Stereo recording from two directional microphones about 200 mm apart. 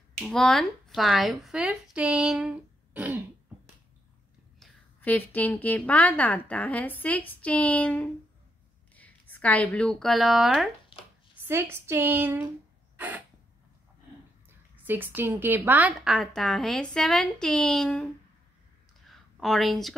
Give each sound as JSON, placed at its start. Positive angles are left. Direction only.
{"t": 0.2, "sound": "speech", "side_deg": 5}
{"t": 4.6, "sound": "a woman's voice", "side_deg": 5}
{"t": 10.9, "sound": "shuffling cards", "side_deg": 25}
{"t": 11.4, "sound": "speech", "side_deg": -10}
{"t": 12.9, "sound": "a sound", "side_deg": -10}
{"t": 14.9, "sound": "a woman's voice", "side_deg": -10}
{"t": 19.0, "sound": "a sound", "side_deg": 0}